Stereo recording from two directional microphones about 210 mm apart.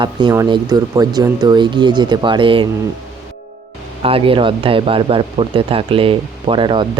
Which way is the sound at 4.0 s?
25° right (ahead or behind).